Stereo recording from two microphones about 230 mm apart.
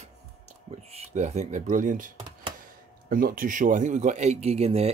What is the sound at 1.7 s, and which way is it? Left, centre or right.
Speech, right.